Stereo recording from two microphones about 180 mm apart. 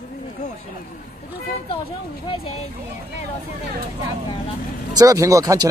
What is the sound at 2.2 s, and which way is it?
Speech, 30° left (ahead or behind).